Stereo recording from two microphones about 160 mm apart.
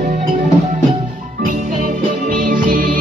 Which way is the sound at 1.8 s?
60° right (ahead or behind).